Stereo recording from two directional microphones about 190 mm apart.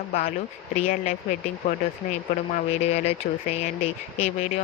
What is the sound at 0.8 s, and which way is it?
Speech, 40° left (ahead or behind).